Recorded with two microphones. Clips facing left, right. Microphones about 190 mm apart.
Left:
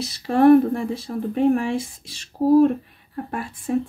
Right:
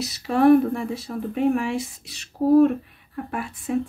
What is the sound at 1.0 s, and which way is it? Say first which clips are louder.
Speech: left 3 dB; 35° left (ahead or behind).